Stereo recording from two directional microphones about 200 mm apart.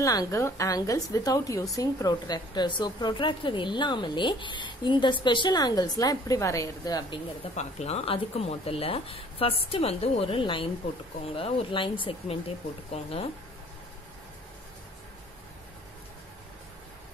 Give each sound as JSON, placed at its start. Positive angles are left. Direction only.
{"t": 0.0, "sound": "a woman's voice", "side_deg": 15}
{"t": 7.5, "sound": "a woman's voice", "side_deg": 30}